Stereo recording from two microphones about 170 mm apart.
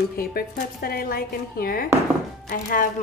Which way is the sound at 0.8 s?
60° left (ahead or behind).